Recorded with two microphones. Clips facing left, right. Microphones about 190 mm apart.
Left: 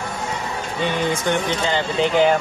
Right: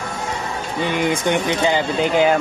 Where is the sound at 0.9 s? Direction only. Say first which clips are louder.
Right 3 dB; 15° right (ahead or behind).